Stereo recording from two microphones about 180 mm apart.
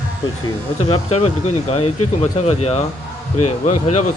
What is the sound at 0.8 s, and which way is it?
Speech, 35° left (ahead or behind).